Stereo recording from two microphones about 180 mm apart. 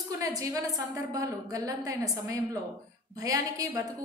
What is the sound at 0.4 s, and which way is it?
A woman's voice, 20° right (ahead or behind).